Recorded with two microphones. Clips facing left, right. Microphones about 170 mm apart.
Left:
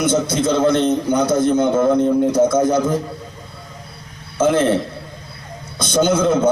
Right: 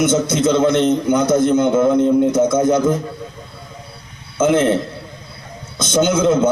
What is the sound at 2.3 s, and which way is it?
Speech, 20° right (ahead or behind).